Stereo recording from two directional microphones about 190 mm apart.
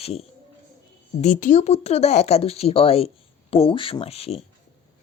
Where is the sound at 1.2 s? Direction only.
40° left (ahead or behind).